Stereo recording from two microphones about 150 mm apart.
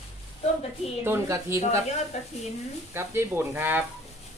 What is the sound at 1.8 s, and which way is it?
Speech, 50° left (ahead or behind).